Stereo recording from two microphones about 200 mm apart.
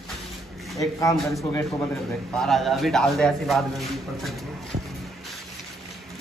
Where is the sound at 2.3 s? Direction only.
Centre (ahead or behind).